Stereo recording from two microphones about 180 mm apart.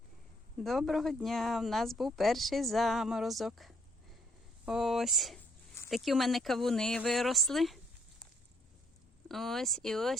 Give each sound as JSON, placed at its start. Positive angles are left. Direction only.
{"t": 0.6, "sound": "speech", "side_deg": 0}
{"t": 9.3, "sound": "speech", "side_deg": 0}